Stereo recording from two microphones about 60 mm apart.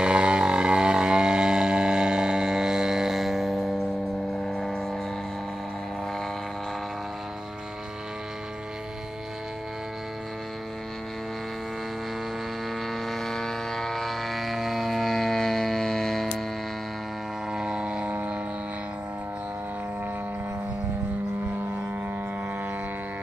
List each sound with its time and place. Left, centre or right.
0.0 s a sound: centre
12.9 s vehicle: centre
17.5 s vehicle: centre